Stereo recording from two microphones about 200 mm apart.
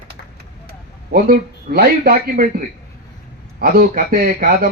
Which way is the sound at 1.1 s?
50° right (ahead or behind).